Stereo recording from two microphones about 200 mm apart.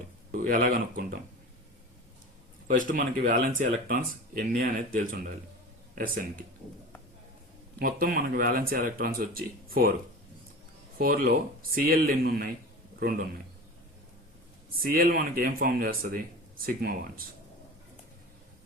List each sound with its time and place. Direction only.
0.3 s speech: 45° right (ahead or behind)
2.6 s speech: 40° right (ahead or behind)
7.8 s speech: 45° right (ahead or behind)
10.9 s a man's voice: 45° right (ahead or behind)
14.8 s speech: 45° right (ahead or behind)